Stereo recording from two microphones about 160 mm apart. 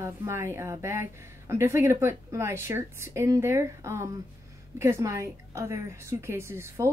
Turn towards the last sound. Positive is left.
turn(degrees=-15)  # may be behind; listen again after turning